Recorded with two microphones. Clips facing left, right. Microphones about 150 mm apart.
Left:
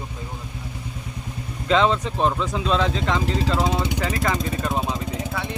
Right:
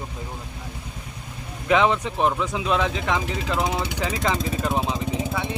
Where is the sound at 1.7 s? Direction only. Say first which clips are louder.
Even; 10° right (ahead or behind).